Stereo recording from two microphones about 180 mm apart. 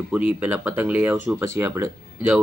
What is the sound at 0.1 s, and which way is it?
Speech, 10° right (ahead or behind).